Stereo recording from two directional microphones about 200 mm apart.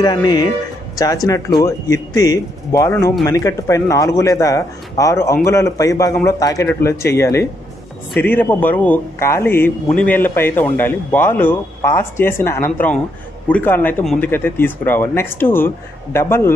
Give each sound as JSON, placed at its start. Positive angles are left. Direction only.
{"t": 0.0, "sound": "a man's voice", "side_deg": 20}